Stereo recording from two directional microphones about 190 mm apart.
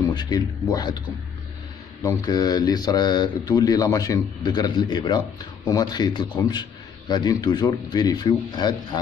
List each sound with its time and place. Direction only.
0.1 s a man's voice: 20° left (ahead or behind)
2.0 s a man's voice: 20° left (ahead or behind)